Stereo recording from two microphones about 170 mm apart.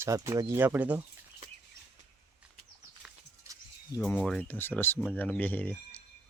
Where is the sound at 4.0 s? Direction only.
5° left (ahead or behind).